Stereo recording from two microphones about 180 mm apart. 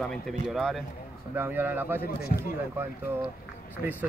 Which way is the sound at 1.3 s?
10° right (ahead or behind).